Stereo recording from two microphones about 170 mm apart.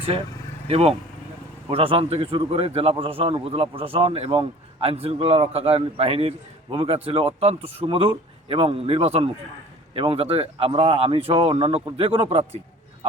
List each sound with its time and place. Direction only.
0.7 s a man's voice: 35° right (ahead or behind)